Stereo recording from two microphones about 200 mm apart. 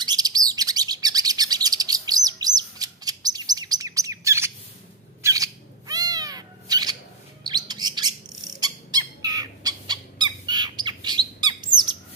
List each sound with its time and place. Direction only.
0.0 s chirp: 20° right (ahead or behind)
5.2 s cat: 15° right (ahead or behind)
7.4 s bird: 20° right (ahead or behind)